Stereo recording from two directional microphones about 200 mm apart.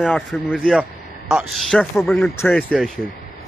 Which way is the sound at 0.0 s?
Centre (ahead or behind).